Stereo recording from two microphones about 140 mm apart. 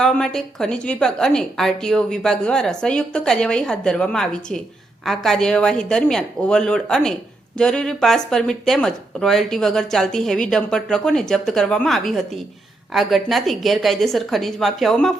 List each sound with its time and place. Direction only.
0.0 s a woman's voice: 5° left (ahead or behind)